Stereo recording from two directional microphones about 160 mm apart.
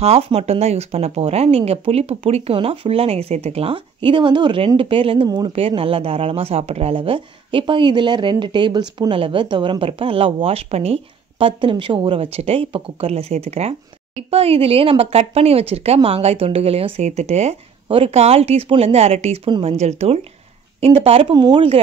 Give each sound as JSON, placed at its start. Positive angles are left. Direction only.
{"t": 0.0, "sound": "speech", "side_deg": -40}